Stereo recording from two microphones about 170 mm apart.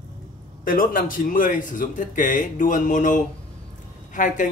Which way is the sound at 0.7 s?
55° left (ahead or behind).